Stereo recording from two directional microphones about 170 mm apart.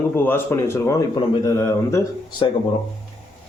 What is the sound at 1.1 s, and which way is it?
A man's voice, 30° left (ahead or behind).